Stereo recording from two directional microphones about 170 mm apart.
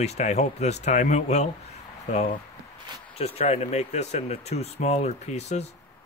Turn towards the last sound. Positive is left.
turn(degrees=40)  # may be behind; listen again after turning